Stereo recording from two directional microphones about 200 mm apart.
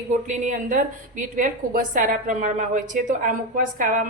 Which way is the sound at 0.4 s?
40° right (ahead or behind).